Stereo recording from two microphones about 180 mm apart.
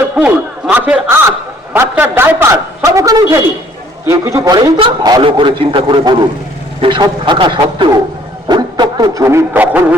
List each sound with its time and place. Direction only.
0.2 s a sound: 10° right (ahead or behind)
4.0 s a man's voice: 15° right (ahead or behind)
8.4 s music: 25° right (ahead or behind)